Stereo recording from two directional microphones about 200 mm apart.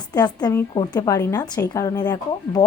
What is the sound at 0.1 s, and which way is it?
A woman's voice, 20° left (ahead or behind).